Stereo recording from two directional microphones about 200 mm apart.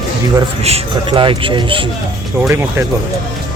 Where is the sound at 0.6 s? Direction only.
30° right (ahead or behind).